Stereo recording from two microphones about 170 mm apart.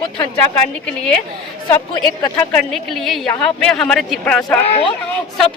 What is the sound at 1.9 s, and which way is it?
Speech, 20° left (ahead or behind).